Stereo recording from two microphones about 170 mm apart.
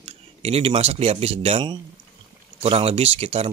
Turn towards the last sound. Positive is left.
turn(degrees=-35)  # may be behind; listen again after turning